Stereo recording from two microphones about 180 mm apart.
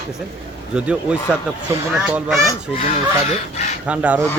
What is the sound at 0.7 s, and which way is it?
Speech, 5° right (ahead or behind).